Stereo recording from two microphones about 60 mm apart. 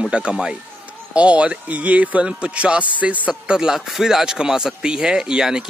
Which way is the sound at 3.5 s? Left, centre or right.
Centre.